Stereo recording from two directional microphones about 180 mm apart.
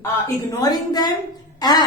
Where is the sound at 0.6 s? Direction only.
20° left (ahead or behind).